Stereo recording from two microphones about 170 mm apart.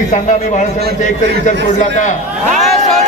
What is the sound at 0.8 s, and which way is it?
Speech, 70° right (ahead or behind).